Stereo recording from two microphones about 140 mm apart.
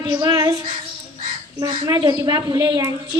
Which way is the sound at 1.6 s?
30° right (ahead or behind).